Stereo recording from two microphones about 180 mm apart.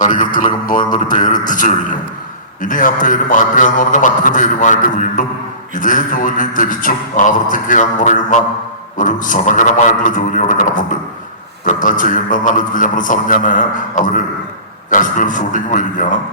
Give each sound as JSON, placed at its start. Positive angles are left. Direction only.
{"t": 0.0, "sound": "a man's voice", "side_deg": 45}